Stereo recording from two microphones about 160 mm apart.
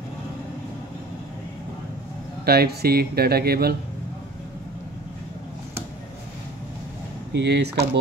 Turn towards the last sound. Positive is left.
turn(degrees=-90)